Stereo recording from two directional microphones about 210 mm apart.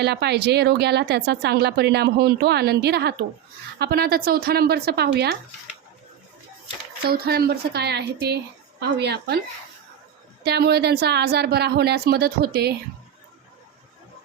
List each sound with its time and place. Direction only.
0.0 s speech: 50° right (ahead or behind)
7.0 s speech: 45° right (ahead or behind)
10.4 s speech: 50° right (ahead or behind)